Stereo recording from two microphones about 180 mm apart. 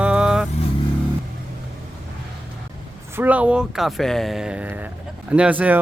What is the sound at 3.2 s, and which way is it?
Speech, 10° right (ahead or behind).